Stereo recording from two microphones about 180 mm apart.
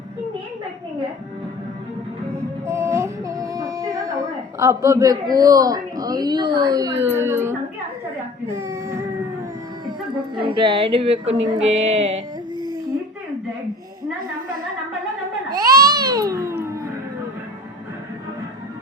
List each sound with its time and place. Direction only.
2.6 s music: 15° right (ahead or behind)
4.6 s a man's voice: 15° right (ahead or behind)
8.5 s music: 15° right (ahead or behind)
10.5 s a man's voice: 30° right (ahead or behind)
11.3 s music: 90° right
11.7 s music: 35° right (ahead or behind)
15.6 s music: 20° right (ahead or behind)